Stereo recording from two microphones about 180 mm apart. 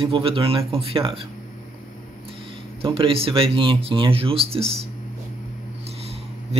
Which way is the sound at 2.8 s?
30° right (ahead or behind).